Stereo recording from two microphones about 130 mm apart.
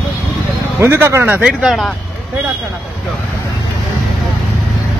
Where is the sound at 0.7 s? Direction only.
20° right (ahead or behind).